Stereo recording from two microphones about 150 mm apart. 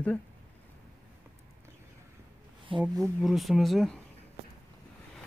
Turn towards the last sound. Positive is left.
turn(degrees=0)  # may be behind; listen again after turning